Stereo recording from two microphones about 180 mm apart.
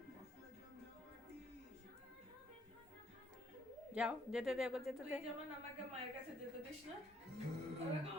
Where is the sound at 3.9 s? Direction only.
5° right (ahead or behind).